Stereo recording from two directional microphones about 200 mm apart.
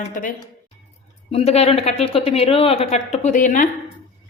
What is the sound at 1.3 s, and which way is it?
A man's voice, 30° left (ahead or behind).